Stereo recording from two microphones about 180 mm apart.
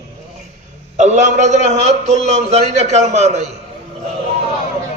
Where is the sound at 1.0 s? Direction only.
40° right (ahead or behind).